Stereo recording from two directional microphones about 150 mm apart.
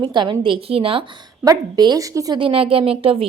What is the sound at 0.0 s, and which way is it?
A woman's voice, 30° right (ahead or behind).